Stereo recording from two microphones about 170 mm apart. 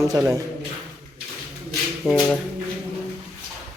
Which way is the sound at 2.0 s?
5° right (ahead or behind).